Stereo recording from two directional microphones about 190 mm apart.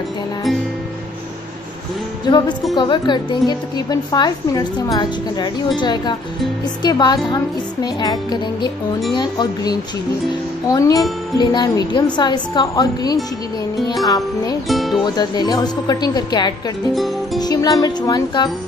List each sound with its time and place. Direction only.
2.2 s speech: 25° left (ahead or behind)
14.7 s speech: centre (ahead or behind)
15.0 s speech: 20° left (ahead or behind)
16.9 s speech: centre (ahead or behind)
17.4 s speech: 20° left (ahead or behind)